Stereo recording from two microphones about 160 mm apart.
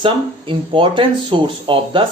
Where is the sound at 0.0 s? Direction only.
30° right (ahead or behind).